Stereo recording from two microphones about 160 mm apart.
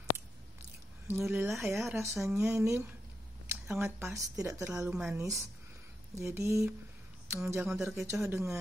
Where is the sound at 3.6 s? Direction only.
5° right (ahead or behind).